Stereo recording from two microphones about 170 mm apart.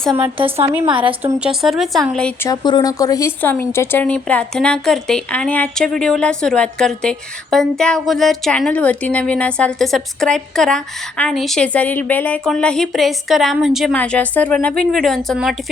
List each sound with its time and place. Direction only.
0.3 s a woman's voice: 35° right (ahead or behind)
1.2 s speech: 10° right (ahead or behind)
2.5 s speech: 25° left (ahead or behind); by 13.9 s centre (ahead or behind)
13.9 s speech: 10° left (ahead or behind)